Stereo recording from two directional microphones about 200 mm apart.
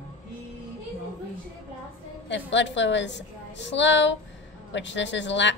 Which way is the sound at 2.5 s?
65° left (ahead or behind).